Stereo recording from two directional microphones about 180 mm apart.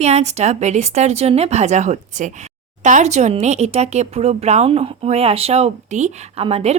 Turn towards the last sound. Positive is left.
turn(degrees=-35)  # may be behind; listen again after turning